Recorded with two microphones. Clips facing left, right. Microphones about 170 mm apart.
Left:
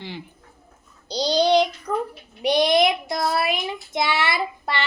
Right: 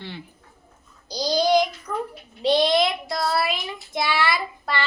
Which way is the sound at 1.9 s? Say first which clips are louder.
Left 3 dB; 60° left (ahead or behind).